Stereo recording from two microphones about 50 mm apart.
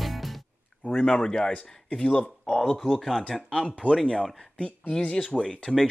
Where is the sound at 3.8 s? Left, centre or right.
Right.